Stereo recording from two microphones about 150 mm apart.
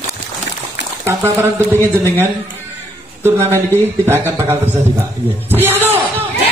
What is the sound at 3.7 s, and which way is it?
A man's voice, 15° right (ahead or behind).